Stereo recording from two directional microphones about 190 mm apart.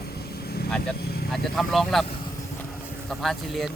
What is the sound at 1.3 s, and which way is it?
Speech, centre (ahead or behind).